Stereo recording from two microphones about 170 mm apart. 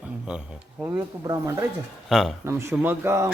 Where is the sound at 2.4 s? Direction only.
15° right (ahead or behind).